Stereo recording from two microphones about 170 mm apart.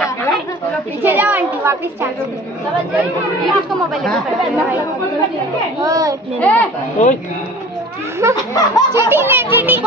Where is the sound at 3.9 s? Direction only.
Centre (ahead or behind).